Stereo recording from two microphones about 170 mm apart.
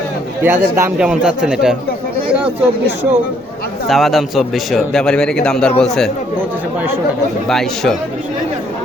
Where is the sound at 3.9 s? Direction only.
Centre (ahead or behind).